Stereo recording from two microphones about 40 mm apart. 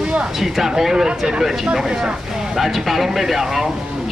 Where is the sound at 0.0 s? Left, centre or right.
Right.